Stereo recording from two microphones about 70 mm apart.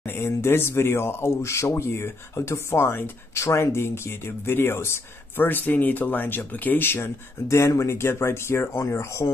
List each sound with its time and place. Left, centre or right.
0.0 s speech: left